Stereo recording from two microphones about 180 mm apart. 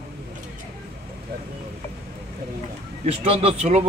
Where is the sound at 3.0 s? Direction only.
35° right (ahead or behind).